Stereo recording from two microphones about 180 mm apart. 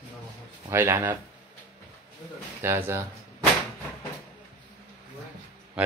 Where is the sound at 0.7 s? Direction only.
15° right (ahead or behind).